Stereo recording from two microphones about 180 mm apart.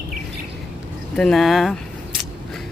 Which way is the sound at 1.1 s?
Centre (ahead or behind).